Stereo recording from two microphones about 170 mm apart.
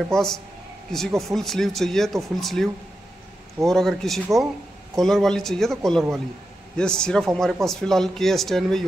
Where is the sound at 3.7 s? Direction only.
Centre (ahead or behind).